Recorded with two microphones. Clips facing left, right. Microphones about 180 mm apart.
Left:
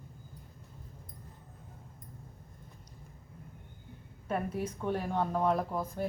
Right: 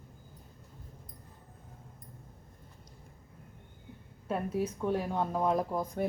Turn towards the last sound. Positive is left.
turn(degrees=-10)  # may be behind; listen again after turning